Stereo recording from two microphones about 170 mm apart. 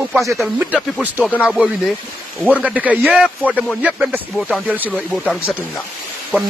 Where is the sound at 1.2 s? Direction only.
5° left (ahead or behind).